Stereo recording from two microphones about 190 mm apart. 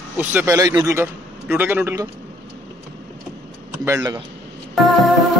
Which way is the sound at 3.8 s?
20° right (ahead or behind).